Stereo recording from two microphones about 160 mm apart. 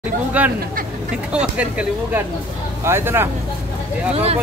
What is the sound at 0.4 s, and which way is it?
Speech, 10° right (ahead or behind).